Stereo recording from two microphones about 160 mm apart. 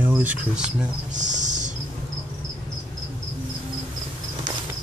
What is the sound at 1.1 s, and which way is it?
Music, 50° right (ahead or behind).